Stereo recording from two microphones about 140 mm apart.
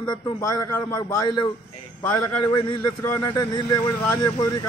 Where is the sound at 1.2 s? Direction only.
30° left (ahead or behind).